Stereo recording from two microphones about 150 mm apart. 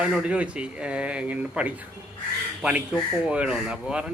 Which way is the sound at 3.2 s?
5° right (ahead or behind).